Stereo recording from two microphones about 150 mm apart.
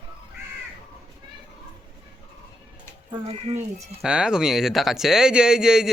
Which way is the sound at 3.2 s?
45° right (ahead or behind).